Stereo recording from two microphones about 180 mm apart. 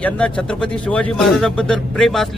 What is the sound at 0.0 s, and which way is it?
A man's voice, 5° left (ahead or behind).